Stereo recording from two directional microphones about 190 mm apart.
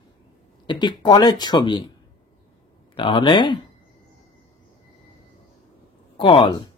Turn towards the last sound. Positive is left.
turn(degrees=25)  # may be behind; listen again after turning